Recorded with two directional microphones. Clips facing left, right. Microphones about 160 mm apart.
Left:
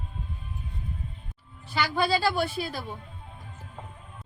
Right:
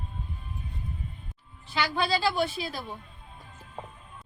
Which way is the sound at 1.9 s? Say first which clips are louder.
Left 3 dB; 5° left (ahead or behind).